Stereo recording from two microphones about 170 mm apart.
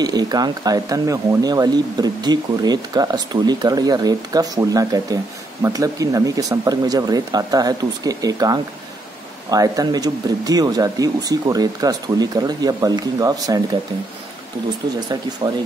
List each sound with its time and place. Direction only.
0.0 s speech: 25° right (ahead or behind)
15.0 s speech: 25° right (ahead or behind)